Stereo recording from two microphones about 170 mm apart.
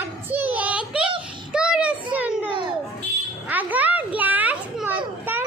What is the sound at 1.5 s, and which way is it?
Child singing, 5° right (ahead or behind).